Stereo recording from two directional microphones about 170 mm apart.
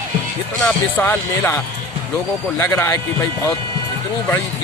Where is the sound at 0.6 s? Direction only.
10° left (ahead or behind).